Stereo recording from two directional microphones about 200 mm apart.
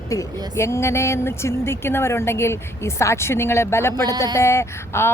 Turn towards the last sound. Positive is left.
turn(degrees=15)  # may be behind; listen again after turning